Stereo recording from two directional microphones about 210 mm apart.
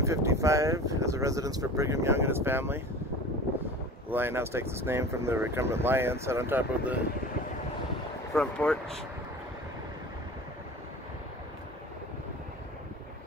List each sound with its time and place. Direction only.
0.0 s speech: 15° right (ahead or behind)
4.1 s speech: 10° right (ahead or behind)
8.4 s speech: 5° left (ahead or behind)